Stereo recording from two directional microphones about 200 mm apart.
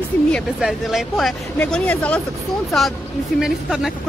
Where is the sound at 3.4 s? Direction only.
Centre (ahead or behind).